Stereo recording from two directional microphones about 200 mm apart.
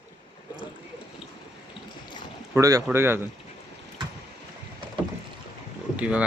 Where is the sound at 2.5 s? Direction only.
15° right (ahead or behind).